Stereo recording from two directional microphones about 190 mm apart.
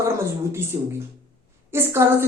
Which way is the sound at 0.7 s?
15° right (ahead or behind).